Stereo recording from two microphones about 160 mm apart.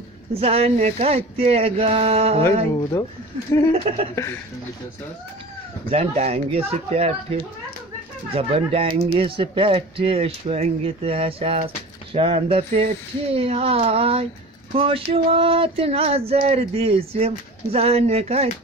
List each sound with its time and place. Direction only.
0.3 s speech: 40° right (ahead or behind)
2.7 s speech: 25° left (ahead or behind)
3.7 s speech: 40° right (ahead or behind)
4.1 s speech: 20° left (ahead or behind)
5.9 s speech: 40° right (ahead or behind)